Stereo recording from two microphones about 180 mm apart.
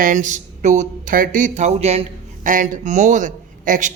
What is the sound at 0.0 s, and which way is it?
A man's voice, 45° right (ahead or behind).